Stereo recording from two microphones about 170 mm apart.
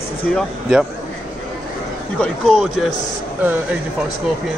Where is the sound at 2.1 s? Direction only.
5° left (ahead or behind).